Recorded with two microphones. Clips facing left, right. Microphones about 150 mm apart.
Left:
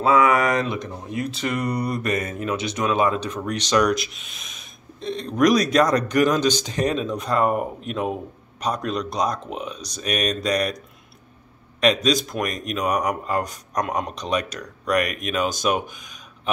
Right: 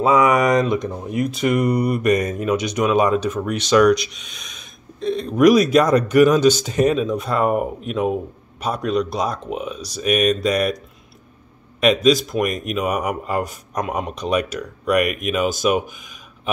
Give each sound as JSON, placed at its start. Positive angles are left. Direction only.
{"t": 0.0, "sound": "speech", "side_deg": -15}
{"t": 11.8, "sound": "speech", "side_deg": -5}